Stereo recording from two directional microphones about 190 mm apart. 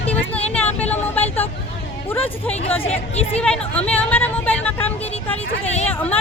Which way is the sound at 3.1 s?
30° left (ahead or behind).